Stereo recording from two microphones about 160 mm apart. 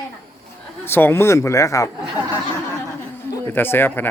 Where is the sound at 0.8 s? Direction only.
15° left (ahead or behind).